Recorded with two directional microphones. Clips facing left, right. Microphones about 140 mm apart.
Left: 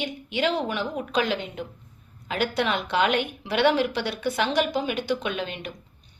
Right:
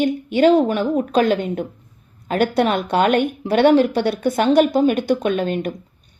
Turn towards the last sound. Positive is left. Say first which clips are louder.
# right 10 dB
turn(degrees=-45)  # may be behind; listen again after turning